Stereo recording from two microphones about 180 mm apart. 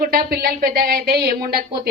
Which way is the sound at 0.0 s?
55° right (ahead or behind).